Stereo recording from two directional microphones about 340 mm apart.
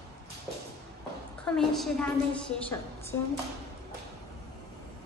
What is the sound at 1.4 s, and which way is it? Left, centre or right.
Speech, centre.